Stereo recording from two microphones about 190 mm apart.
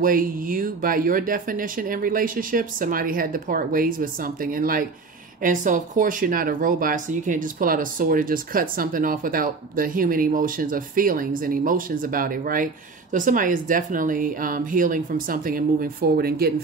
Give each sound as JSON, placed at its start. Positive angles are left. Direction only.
{"t": 0.0, "sound": "speech", "side_deg": -45}